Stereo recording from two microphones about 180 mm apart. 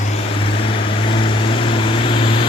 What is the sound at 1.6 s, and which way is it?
Vehicle, 30° left (ahead or behind).